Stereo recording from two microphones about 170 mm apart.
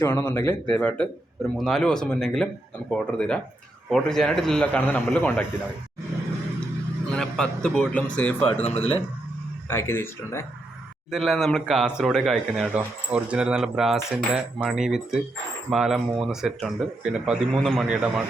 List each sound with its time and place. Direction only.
0.0 s speech: 15° left (ahead or behind)
7.1 s speech: 5° left (ahead or behind)
8.6 s speech: 35° left (ahead or behind)
9.6 s speech: 15° left (ahead or behind)
11.1 s speech: centre (ahead or behind)